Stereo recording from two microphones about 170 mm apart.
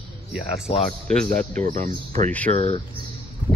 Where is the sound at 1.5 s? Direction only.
50° right (ahead or behind).